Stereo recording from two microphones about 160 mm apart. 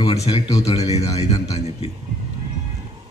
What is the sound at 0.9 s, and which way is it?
Speech, 40° left (ahead or behind).